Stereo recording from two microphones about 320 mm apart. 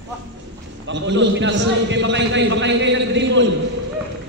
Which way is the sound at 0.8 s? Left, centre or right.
Right.